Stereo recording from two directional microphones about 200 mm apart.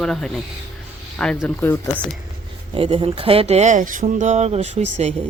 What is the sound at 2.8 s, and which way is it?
Speech, 25° right (ahead or behind).